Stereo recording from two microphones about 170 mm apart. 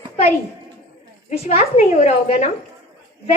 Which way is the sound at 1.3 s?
40° left (ahead or behind).